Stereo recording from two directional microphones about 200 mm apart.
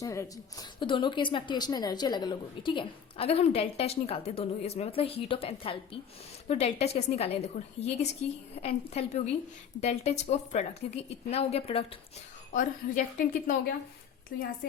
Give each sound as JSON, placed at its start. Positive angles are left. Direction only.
{"t": 0.0, "sound": "a woman's voice", "side_deg": 15}
{"t": 12.5, "sound": "a woman's voice", "side_deg": 40}